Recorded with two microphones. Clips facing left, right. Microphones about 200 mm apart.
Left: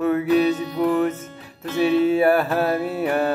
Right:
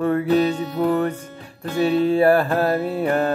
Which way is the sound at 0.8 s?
Centre (ahead or behind).